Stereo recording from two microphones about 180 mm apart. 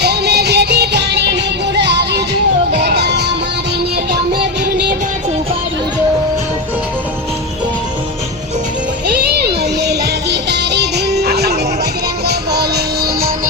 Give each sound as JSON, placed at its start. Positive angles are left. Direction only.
{"t": 0.0, "sound": "music", "side_deg": -65}
{"t": 9.3, "sound": "music", "side_deg": -65}